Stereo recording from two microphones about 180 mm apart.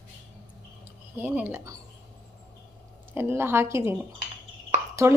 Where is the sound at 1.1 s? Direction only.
10° right (ahead or behind).